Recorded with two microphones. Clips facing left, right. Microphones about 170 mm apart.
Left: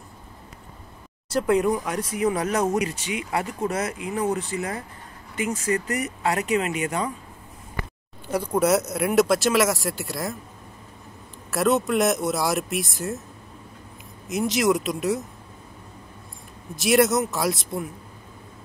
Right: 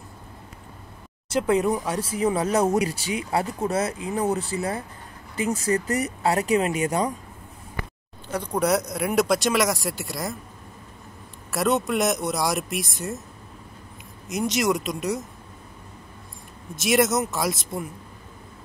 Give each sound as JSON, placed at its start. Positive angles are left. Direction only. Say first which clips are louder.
{"t": 1.3, "sound": "speech", "louder": "left 1 dB", "side_deg": -25}
{"t": 8.3, "sound": "speech", "louder": "left 2 dB", "side_deg": 10}
{"t": 11.5, "sound": "speech", "louder": "left 2 dB", "side_deg": 0}
{"t": 14.2, "sound": "speech", "louder": "left 2 dB", "side_deg": 0}
{"t": 16.7, "sound": "speech", "louder": "left 2 dB", "side_deg": 0}